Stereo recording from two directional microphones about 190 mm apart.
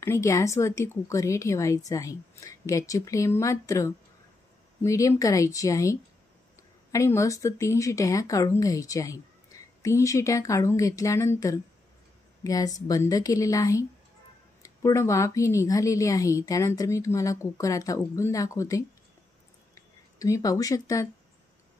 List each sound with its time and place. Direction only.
0.0 s speech: 15° left (ahead or behind)